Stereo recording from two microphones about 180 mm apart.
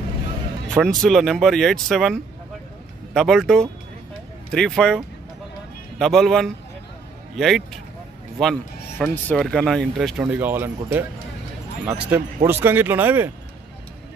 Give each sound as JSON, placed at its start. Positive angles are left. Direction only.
{"t": 0.7, "sound": "speech", "side_deg": 5}
{"t": 12.1, "sound": "speech", "side_deg": -10}